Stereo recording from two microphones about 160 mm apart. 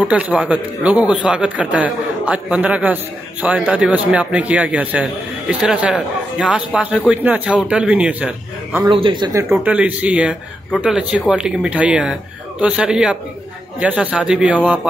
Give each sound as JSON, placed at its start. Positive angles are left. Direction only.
{"t": 0.0, "sound": "speech", "side_deg": -5}
{"t": 8.8, "sound": "speech", "side_deg": -30}
{"t": 9.6, "sound": "speech", "side_deg": -10}